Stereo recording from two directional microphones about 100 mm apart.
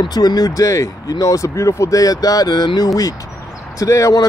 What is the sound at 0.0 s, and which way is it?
Speech, 40° left (ahead or behind).